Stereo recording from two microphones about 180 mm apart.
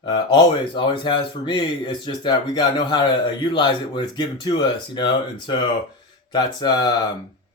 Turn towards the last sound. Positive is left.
turn(degrees=20)  # may be behind; listen again after turning